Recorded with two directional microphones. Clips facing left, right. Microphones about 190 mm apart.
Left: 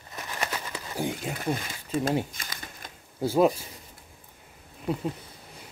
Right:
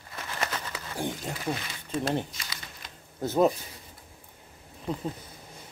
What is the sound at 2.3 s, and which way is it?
Crumpling, 50° left (ahead or behind).